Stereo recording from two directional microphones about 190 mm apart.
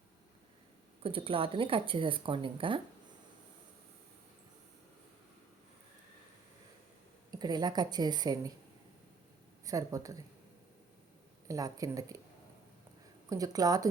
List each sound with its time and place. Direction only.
1.0 s speech: 30° right (ahead or behind)
7.3 s speech: 20° right (ahead or behind)
9.6 s a woman's voice: 20° right (ahead or behind)
11.4 s speech: 20° right (ahead or behind)
13.3 s speech: 20° right (ahead or behind)